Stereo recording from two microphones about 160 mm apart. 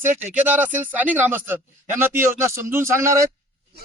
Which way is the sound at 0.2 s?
10° right (ahead or behind).